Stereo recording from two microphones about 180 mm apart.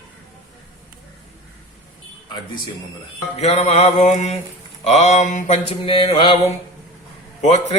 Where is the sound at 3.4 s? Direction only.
35° left (ahead or behind).